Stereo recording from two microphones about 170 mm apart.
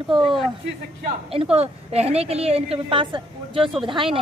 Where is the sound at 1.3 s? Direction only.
35° right (ahead or behind).